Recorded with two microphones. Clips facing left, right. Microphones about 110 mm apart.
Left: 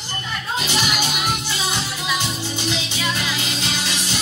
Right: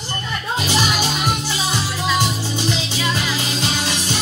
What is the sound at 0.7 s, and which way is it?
Music, 40° right (ahead or behind).